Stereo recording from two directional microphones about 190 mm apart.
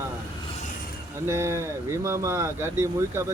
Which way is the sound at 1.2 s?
15° right (ahead or behind).